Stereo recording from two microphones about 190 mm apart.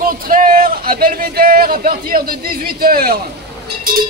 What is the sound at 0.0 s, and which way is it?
Speech, 50° right (ahead or behind).